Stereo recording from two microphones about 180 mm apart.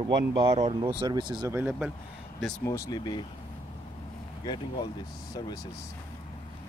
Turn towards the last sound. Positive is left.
turn(degrees=25)  # may be behind; listen again after turning